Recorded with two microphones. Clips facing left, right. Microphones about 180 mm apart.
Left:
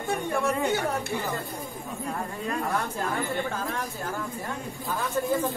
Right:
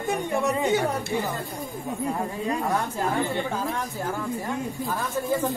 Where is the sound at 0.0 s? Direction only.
20° right (ahead or behind).